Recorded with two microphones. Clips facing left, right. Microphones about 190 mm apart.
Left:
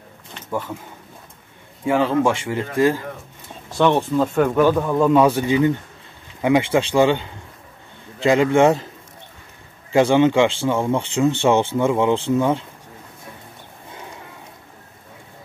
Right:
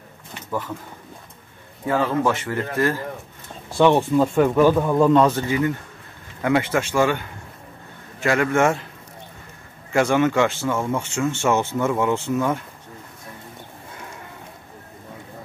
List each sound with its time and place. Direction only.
0.5 s speech: 10° left (ahead or behind)
1.9 s speech: 15° left (ahead or behind)
3.7 s speech: 10° right (ahead or behind)
5.1 s speech: 10° left (ahead or behind)
8.3 s speech: 20° left (ahead or behind)
9.9 s speech: 25° left (ahead or behind)